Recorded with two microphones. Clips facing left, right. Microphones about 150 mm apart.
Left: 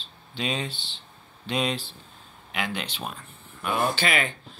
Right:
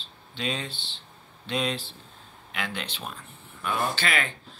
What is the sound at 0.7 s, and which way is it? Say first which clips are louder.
Speech: left 2 dB; 30° right (ahead or behind).